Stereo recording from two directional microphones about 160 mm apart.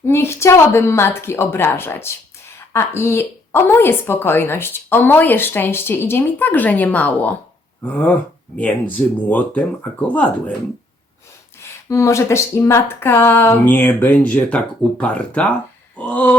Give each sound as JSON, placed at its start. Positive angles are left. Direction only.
{"t": 0.0, "sound": "a woman's voice", "side_deg": 15}
{"t": 11.6, "sound": "a woman's voice", "side_deg": 20}